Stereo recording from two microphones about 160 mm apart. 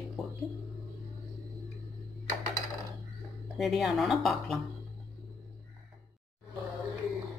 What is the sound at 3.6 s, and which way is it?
A woman's voice, centre (ahead or behind).